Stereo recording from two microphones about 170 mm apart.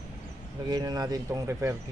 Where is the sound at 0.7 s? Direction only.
25° right (ahead or behind).